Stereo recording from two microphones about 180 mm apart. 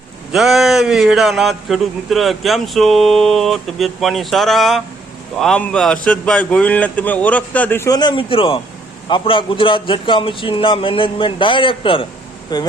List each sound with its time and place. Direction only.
0.3 s a man's voice: centre (ahead or behind); by 12.7 s 20° left (ahead or behind)